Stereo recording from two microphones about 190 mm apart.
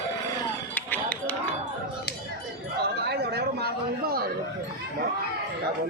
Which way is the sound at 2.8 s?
60° right (ahead or behind).